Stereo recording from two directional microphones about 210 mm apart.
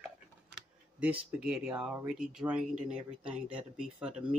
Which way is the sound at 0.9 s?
5° right (ahead or behind).